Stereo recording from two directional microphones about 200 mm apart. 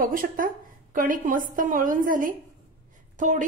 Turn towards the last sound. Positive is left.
turn(degrees=-40)  # may be behind; listen again after turning